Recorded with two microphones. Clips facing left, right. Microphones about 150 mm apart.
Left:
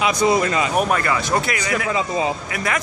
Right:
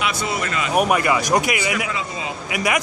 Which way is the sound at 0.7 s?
10° right (ahead or behind).